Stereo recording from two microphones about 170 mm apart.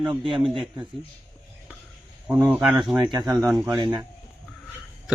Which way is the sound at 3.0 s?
20° right (ahead or behind).